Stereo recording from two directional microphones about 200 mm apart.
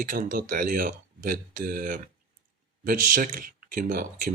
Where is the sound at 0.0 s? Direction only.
40° right (ahead or behind).